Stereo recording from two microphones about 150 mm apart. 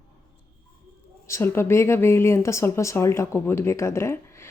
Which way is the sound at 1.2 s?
20° left (ahead or behind).